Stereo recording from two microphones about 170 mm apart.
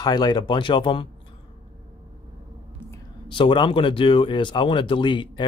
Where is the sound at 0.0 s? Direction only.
25° left (ahead or behind).